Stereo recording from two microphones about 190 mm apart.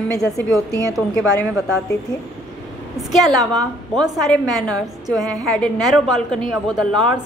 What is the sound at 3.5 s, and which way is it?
Speech, 20° right (ahead or behind).